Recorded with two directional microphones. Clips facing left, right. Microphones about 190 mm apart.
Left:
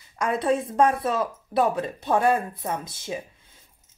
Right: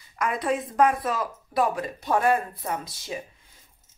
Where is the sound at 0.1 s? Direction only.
30° left (ahead or behind).